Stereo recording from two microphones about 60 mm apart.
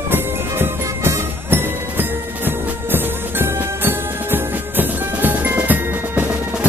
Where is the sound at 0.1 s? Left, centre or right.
Right.